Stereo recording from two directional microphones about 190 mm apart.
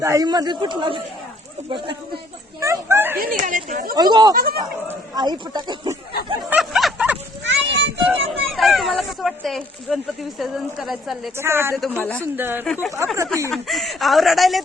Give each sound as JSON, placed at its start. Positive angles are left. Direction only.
{"t": 0.0, "sound": "a man's voice", "side_deg": -15}
{"t": 2.6, "sound": "speech", "side_deg": -15}
{"t": 3.2, "sound": "speech", "side_deg": -45}
{"t": 3.9, "sound": "a man's voice", "side_deg": -20}
{"t": 4.4, "sound": "speech", "side_deg": -50}
{"t": 5.1, "sound": "a man's voice", "side_deg": -20}
{"t": 6.5, "sound": "a sound", "side_deg": 0}
{"t": 7.4, "sound": "children playing", "side_deg": -70}
{"t": 8.5, "sound": "speech", "side_deg": 0}
{"t": 11.3, "sound": "speech", "side_deg": -15}
{"t": 11.8, "sound": "a man's voice", "side_deg": 5}
{"t": 12.2, "sound": "speech", "side_deg": -10}
{"t": 13.5, "sound": "speech", "side_deg": 0}